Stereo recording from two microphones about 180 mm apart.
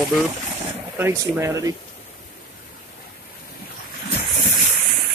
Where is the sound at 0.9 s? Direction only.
15° right (ahead or behind).